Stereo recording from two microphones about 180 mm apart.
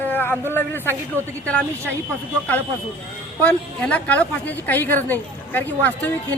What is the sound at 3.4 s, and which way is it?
A woman's voice, 10° left (ahead or behind).